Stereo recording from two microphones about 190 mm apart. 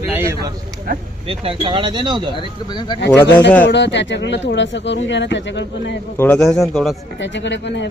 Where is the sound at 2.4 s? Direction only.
25° left (ahead or behind).